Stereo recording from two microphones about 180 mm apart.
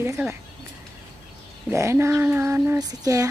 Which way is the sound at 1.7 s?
15° right (ahead or behind).